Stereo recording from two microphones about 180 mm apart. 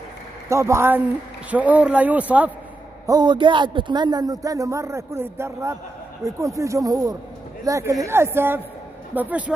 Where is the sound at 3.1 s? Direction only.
25° right (ahead or behind).